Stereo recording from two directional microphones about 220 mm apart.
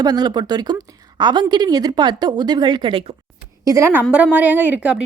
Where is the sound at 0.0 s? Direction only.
20° right (ahead or behind).